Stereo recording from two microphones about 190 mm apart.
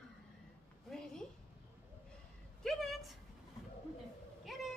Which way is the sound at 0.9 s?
Centre (ahead or behind).